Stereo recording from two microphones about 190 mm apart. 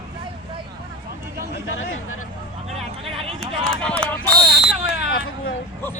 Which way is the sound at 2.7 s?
30° right (ahead or behind).